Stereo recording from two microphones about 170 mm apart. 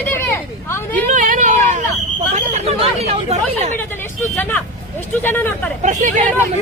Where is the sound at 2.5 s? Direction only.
40° right (ahead or behind).